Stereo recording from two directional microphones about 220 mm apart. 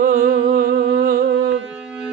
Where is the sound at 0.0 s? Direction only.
40° right (ahead or behind).